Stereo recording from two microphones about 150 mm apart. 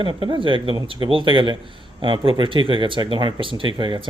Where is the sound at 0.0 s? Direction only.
35° right (ahead or behind).